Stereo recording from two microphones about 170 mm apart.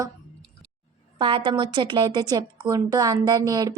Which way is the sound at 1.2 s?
30° right (ahead or behind).